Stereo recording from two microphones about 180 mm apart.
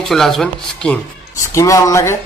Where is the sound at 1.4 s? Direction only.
15° left (ahead or behind).